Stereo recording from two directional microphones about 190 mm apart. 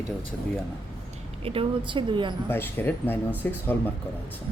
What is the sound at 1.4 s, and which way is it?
Speech, 30° right (ahead or behind).